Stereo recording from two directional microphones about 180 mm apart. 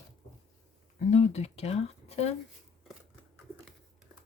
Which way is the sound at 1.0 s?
40° left (ahead or behind).